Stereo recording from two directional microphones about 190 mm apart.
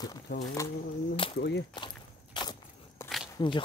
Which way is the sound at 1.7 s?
25° left (ahead or behind).